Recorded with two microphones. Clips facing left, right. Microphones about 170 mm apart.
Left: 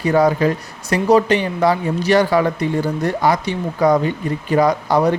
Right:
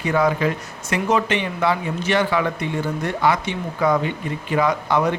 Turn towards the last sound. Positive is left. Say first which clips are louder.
# left 4 dB
turn(degrees=35)  # may be behind; listen again after turning